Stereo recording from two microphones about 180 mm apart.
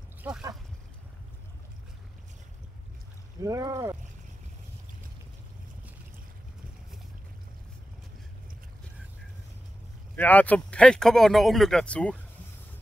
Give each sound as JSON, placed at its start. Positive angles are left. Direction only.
{"t": 0.2, "sound": "speech", "side_deg": -10}
{"t": 3.4, "sound": "speech", "side_deg": -20}
{"t": 10.1, "sound": "speech", "side_deg": 10}